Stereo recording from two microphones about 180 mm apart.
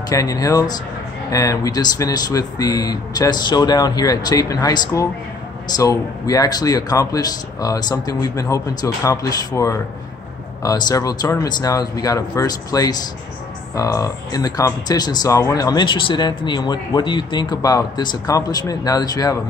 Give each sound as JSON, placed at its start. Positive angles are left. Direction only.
{"t": 0.1, "sound": "speech", "side_deg": 20}